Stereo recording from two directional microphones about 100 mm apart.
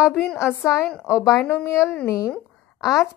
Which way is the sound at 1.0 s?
10° right (ahead or behind).